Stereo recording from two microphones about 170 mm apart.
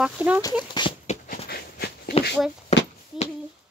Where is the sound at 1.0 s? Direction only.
55° left (ahead or behind).